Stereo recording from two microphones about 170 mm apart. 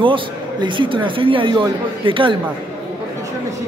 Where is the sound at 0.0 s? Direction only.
30° right (ahead or behind).